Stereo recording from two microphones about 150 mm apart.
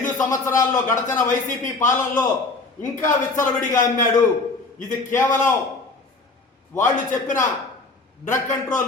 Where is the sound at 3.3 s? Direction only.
60° left (ahead or behind).